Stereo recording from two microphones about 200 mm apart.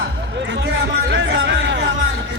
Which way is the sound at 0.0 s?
60° right (ahead or behind).